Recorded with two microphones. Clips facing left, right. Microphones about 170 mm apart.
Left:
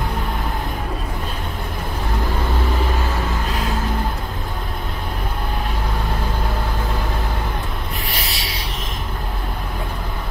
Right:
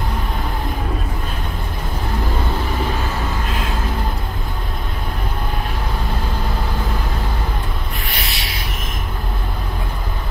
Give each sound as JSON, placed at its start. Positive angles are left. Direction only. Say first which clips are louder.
{"t": 8.1, "sound": "rub", "louder": "even", "side_deg": 35}